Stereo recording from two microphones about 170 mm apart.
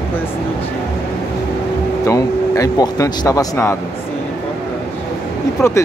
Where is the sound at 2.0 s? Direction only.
20° left (ahead or behind).